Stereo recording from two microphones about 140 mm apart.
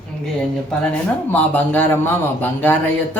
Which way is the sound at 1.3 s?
15° left (ahead or behind).